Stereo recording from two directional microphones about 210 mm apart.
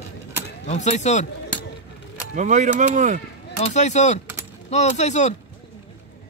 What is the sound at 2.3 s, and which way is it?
Speech, 35° right (ahead or behind).